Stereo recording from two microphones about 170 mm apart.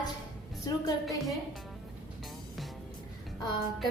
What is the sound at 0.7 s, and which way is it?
Speech, 20° left (ahead or behind).